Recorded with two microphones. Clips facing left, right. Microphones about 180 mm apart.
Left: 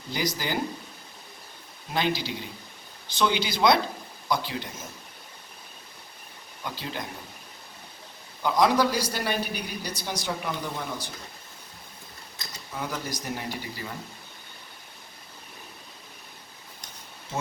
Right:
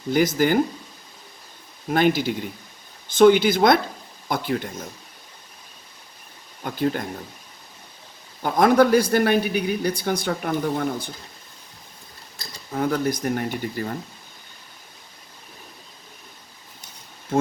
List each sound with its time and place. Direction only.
0.1 s speech: 50° right (ahead or behind)
1.9 s speech: 50° right (ahead or behind)
6.6 s speech: 50° right (ahead or behind)
8.4 s a man's voice: 50° right (ahead or behind)
12.7 s a man's voice: 55° right (ahead or behind)